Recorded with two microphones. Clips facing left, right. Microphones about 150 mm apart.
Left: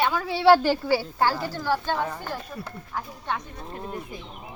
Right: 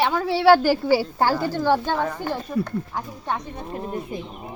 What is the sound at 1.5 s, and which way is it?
Speech, 20° right (ahead or behind).